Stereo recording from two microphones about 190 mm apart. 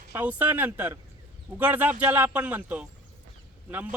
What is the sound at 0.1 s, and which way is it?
Speech, 10° right (ahead or behind).